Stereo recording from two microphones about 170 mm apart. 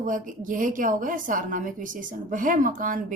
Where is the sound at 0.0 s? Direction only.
50° right (ahead or behind).